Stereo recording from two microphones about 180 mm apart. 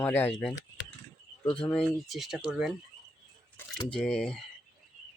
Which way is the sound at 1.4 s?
30° left (ahead or behind).